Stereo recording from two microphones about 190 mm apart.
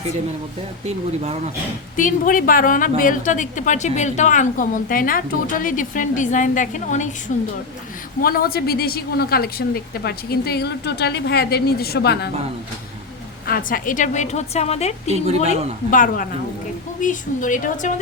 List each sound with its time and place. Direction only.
0.9 s speech: 35° right (ahead or behind)
2.0 s a woman's voice: 45° left (ahead or behind)
13.5 s a woman's voice: 45° left (ahead or behind)